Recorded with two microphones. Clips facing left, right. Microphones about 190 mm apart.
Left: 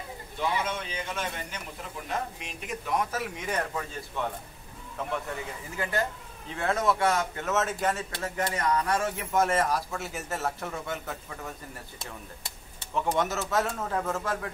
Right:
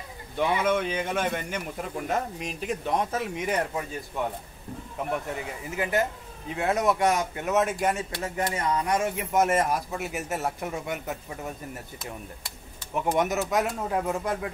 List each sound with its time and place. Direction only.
0.4 s a man's voice: 55° right (ahead or behind); by 4.3 s 20° right (ahead or behind)
5.8 s a man's voice: 20° right (ahead or behind)
12.9 s a man's voice: 15° right (ahead or behind)